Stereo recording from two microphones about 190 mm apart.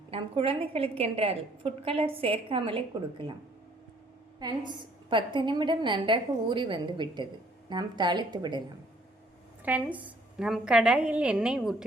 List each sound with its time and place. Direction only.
0.1 s a woman's voice: 30° right (ahead or behind)
4.4 s a woman's voice: 25° right (ahead or behind)
9.6 s a woman's voice: 10° right (ahead or behind)